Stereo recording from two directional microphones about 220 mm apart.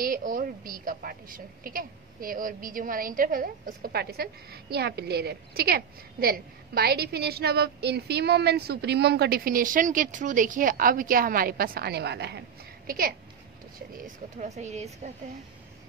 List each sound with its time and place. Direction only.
0.0 s a woman's voice: 40° right (ahead or behind)